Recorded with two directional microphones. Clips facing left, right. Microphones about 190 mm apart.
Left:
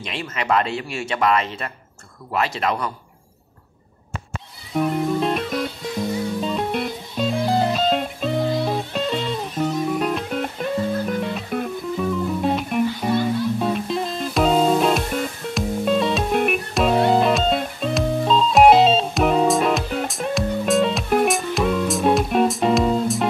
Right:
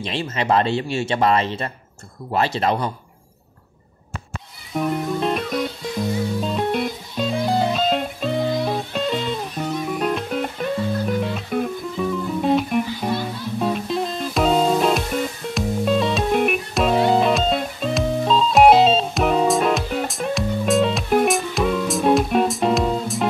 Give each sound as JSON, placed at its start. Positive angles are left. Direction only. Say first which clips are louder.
{"t": 0.0, "sound": "speech", "louder": "right 4 dB", "side_deg": -30}
{"t": 4.7, "sound": "music", "louder": "left 2 dB", "side_deg": 0}